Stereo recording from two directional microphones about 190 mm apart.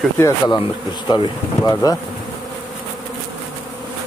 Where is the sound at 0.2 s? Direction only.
20° left (ahead or behind).